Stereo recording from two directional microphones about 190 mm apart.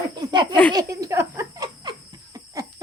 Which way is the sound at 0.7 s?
15° right (ahead or behind).